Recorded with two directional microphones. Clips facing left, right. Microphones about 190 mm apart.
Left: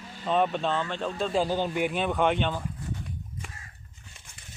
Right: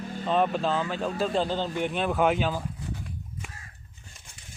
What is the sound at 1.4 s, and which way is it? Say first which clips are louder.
Speech: left 1 dB; 10° left (ahead or behind).